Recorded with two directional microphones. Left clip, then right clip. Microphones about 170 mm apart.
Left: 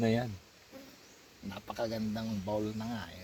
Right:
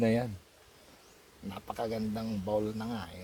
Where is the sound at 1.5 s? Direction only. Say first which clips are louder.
Right 1 dB; 15° right (ahead or behind).